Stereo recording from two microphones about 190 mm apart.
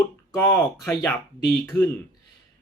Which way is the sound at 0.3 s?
15° left (ahead or behind).